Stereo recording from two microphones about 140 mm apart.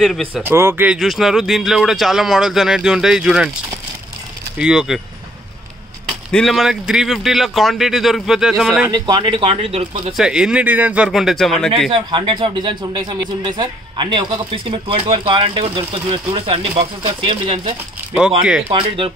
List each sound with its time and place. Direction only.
0.0 s speech: 5° left (ahead or behind)
0.3 s speech: 15° right (ahead or behind)
0.9 s speech: centre (ahead or behind)
4.6 s speech: 5° right (ahead or behind)
6.3 s speech: centre (ahead or behind)
8.9 s a man's voice: 30° right (ahead or behind)
10.1 s speech: 5° right (ahead or behind)
11.1 s speech: centre (ahead or behind)
11.9 s a man's voice: 35° right (ahead or behind)
18.4 s speech: 5° right (ahead or behind)
18.7 s a man's voice: 40° right (ahead or behind)